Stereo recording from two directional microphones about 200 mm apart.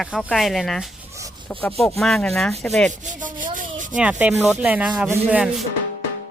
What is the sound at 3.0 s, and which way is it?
Rub, 40° right (ahead or behind).